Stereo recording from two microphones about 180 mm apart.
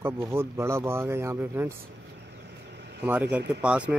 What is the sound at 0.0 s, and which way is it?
Speech, 15° right (ahead or behind).